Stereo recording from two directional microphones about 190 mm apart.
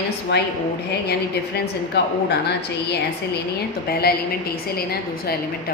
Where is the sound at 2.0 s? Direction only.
65° left (ahead or behind).